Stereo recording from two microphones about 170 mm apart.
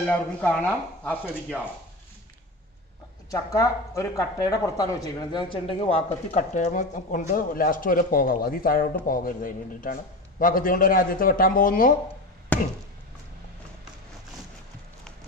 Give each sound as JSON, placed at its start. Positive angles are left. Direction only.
{"t": 0.1, "sound": "speech", "side_deg": 10}
{"t": 3.3, "sound": "a man's voice", "side_deg": 20}
{"t": 12.5, "sound": "chop", "side_deg": 10}